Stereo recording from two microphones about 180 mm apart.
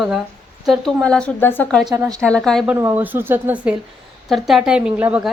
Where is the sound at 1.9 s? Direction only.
20° right (ahead or behind).